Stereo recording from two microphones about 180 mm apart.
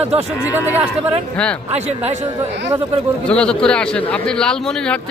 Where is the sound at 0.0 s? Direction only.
35° right (ahead or behind).